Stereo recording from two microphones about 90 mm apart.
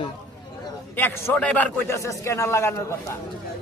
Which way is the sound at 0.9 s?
25° left (ahead or behind).